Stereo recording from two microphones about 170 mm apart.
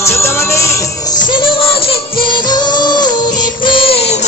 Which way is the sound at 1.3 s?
30° left (ahead or behind).